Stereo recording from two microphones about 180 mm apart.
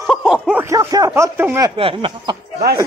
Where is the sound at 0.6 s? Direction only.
20° right (ahead or behind).